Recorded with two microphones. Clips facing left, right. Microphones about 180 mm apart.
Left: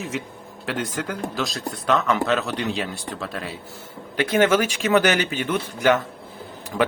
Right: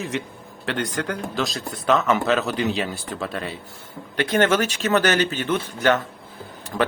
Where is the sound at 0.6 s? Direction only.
5° left (ahead or behind).